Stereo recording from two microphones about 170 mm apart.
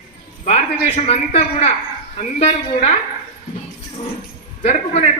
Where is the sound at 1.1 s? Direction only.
35° left (ahead or behind).